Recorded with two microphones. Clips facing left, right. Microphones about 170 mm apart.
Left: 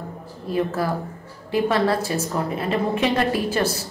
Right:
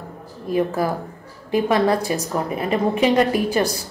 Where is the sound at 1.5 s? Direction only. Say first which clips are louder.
Right 2 dB; 20° right (ahead or behind).